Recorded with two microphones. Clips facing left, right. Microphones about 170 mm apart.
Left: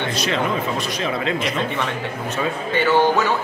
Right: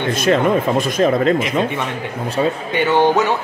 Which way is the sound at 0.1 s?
50° right (ahead or behind).